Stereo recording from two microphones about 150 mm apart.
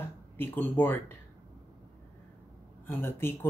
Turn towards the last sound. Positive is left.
turn(degrees=15)  # may be behind; listen again after turning